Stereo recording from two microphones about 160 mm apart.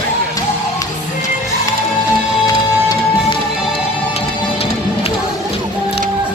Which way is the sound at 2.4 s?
25° left (ahead or behind).